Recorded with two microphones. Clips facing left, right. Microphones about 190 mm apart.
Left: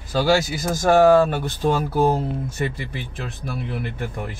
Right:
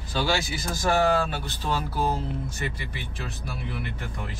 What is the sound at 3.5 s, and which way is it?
Speech, 55° left (ahead or behind).